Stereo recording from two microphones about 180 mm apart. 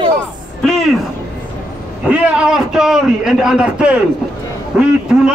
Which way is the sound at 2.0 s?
5° right (ahead or behind).